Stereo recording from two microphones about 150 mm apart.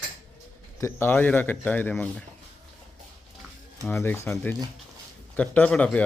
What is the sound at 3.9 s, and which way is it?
Speech, 15° left (ahead or behind).